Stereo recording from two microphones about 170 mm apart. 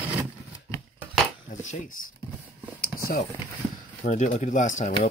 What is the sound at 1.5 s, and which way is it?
Speech, 45° left (ahead or behind).